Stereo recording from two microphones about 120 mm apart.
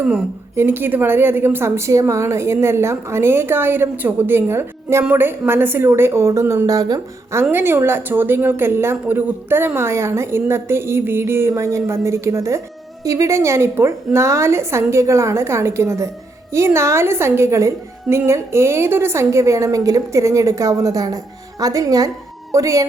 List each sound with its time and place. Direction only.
0.0 s a woman's voice: 15° right (ahead or behind); by 7.0 s 30° right (ahead or behind)
7.5 s a woman's voice: 20° right (ahead or behind)